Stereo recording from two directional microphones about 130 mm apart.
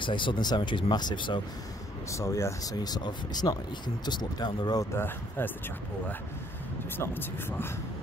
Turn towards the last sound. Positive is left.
turn(degrees=20)  # may be behind; listen again after turning